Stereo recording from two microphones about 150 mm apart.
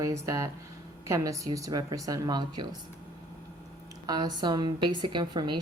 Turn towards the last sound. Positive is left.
turn(degrees=-30)  # may be behind; listen again after turning